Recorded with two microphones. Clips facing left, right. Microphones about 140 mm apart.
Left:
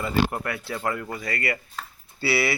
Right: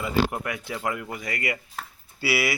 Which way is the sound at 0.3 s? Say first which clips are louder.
Left 1 dB; 15° right (ahead or behind).